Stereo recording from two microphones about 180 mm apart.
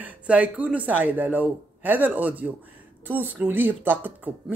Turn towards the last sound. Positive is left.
turn(degrees=-10)  # may be behind; listen again after turning